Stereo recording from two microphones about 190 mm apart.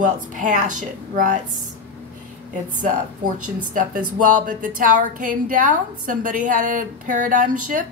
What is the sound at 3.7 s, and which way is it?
Speech, 45° right (ahead or behind).